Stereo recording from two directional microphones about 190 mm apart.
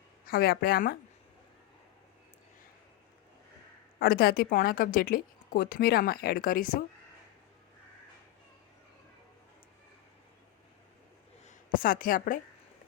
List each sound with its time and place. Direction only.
0.3 s a woman's voice: 50° left (ahead or behind)
4.0 s a woman's voice: 50° left (ahead or behind)
11.4 s a sound: 45° left (ahead or behind)